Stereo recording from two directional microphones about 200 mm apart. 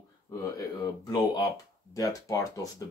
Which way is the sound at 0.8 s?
20° left (ahead or behind).